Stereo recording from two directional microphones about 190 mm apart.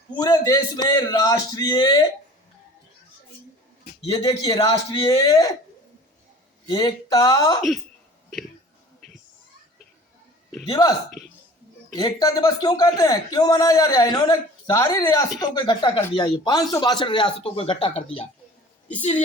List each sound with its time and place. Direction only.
0.2 s a man's voice: 20° left (ahead or behind)
4.1 s a man's voice: 20° left (ahead or behind)
6.7 s a man's voice: 20° left (ahead or behind)
10.7 s a man's voice: 20° left (ahead or behind)
11.9 s a man's voice: 20° left (ahead or behind)